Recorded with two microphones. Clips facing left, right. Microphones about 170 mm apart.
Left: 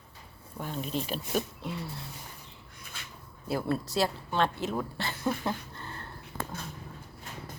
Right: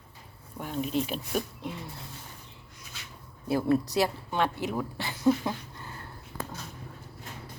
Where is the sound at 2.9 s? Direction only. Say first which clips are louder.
Left 1 dB; 55° left (ahead or behind).